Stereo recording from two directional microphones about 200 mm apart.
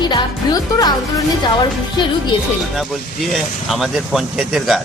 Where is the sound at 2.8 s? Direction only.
Centre (ahead or behind).